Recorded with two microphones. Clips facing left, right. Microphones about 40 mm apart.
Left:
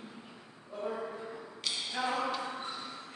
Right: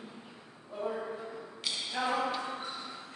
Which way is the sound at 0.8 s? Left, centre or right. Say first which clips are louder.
Right 1 dB; centre.